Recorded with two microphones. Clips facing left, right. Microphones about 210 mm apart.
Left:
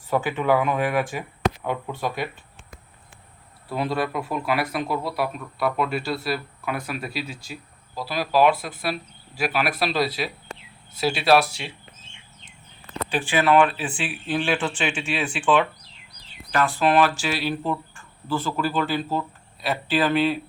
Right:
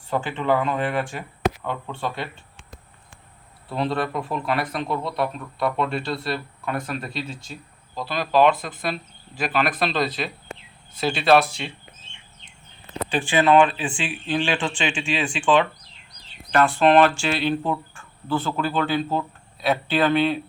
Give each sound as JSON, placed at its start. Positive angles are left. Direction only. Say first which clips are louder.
{"t": 0.1, "sound": "speech", "louder": "left 1 dB", "side_deg": 10}
{"t": 3.9, "sound": "speech", "louder": "even", "side_deg": 5}
{"t": 13.3, "sound": "speech", "louder": "right 2 dB", "side_deg": -20}
{"t": 13.6, "sound": "speech", "louder": "right 1 dB", "side_deg": 5}